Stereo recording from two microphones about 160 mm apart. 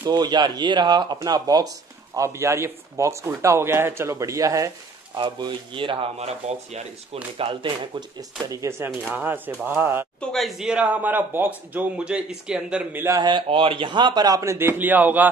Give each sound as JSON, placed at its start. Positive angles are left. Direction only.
{"t": 0.0, "sound": "a man's voice", "side_deg": -25}
{"t": 5.1, "sound": "speech", "side_deg": -30}
{"t": 7.3, "sound": "a man's voice", "side_deg": -30}
{"t": 10.3, "sound": "a man's voice", "side_deg": 0}
{"t": 13.2, "sound": "speech", "side_deg": -30}